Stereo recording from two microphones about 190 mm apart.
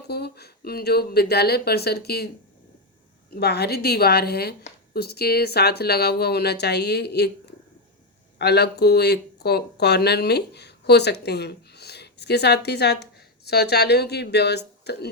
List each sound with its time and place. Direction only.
0.1 s speech: 55° left (ahead or behind)
8.4 s speech: 60° left (ahead or behind)